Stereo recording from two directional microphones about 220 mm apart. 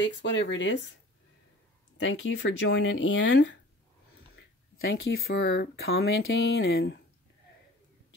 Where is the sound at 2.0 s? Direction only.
60° left (ahead or behind).